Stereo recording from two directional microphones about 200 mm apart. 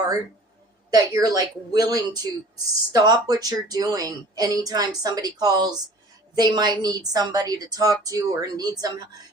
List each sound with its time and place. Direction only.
0.9 s a woman's voice: 20° right (ahead or behind)